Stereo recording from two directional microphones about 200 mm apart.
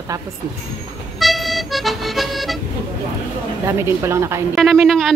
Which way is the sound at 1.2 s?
Centre (ahead or behind).